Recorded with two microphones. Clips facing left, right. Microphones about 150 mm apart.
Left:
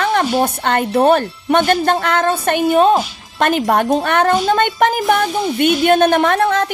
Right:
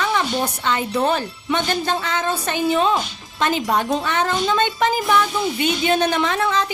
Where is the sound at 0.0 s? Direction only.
55° left (ahead or behind).